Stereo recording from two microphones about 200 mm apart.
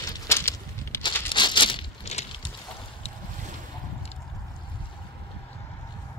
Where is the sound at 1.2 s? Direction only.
25° left (ahead or behind).